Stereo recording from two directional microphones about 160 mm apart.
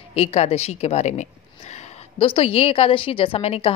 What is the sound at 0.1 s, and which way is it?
A woman's voice, 40° left (ahead or behind).